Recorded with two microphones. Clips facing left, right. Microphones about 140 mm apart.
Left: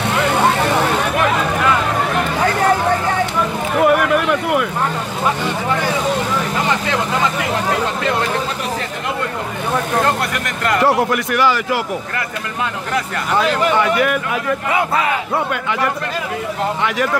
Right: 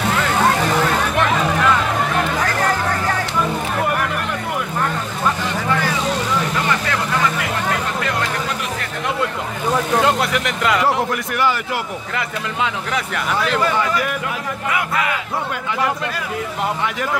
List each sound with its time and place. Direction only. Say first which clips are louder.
3.8 s a sound: left 12 dB; 85° left
9.9 s vehicle: right 1 dB; 5° right (ahead or behind)
11.3 s a man's voice: left 3 dB; 90° left
13.7 s speech: left 4 dB; 65° left (ahead or behind)
14.7 s speech: left 2 dB; 30° left (ahead or behind)